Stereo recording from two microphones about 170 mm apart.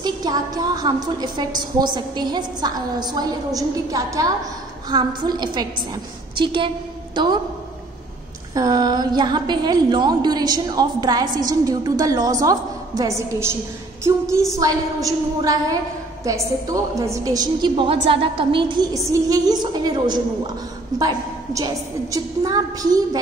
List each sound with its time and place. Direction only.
0.0 s a woman's voice: 20° right (ahead or behind)
8.5 s a woman's voice: 25° right (ahead or behind)
14.6 s a woman's voice: 20° right (ahead or behind)